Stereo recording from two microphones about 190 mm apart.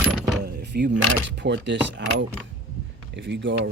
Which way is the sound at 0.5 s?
60° right (ahead or behind).